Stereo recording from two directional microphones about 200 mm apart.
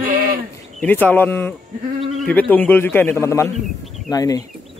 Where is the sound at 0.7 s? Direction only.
10° left (ahead or behind).